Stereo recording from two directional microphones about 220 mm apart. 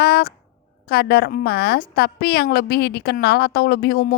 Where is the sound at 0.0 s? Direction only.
45° left (ahead or behind).